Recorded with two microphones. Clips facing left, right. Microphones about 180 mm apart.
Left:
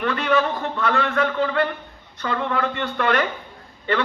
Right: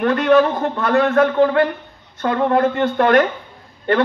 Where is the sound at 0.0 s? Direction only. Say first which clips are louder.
Right 7 dB; 45° right (ahead or behind).